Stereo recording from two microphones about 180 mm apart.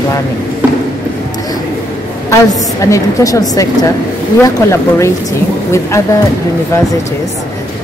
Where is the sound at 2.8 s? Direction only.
20° left (ahead or behind).